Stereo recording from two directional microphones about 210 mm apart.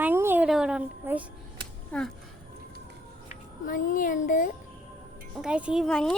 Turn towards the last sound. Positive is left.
turn(degrees=5)  # may be behind; listen again after turning